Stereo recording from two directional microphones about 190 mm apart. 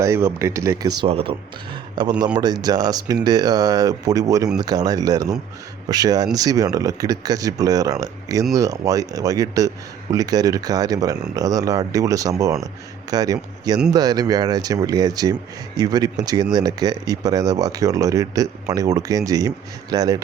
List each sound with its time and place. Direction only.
0.0 s speech: 15° right (ahead or behind)
1.0 s speech: 30° right (ahead or behind)